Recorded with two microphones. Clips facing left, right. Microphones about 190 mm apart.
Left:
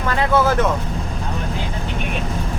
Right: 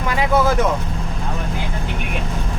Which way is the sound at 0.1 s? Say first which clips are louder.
Even; 10° right (ahead or behind).